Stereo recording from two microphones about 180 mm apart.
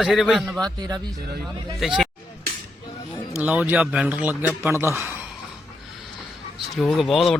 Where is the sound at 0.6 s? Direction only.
20° right (ahead or behind).